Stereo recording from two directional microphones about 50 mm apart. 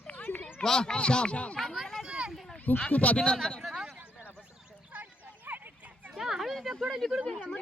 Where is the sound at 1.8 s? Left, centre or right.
Centre.